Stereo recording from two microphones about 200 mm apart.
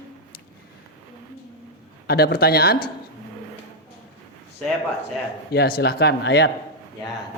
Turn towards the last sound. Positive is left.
turn(degrees=60)  # may be behind; listen again after turning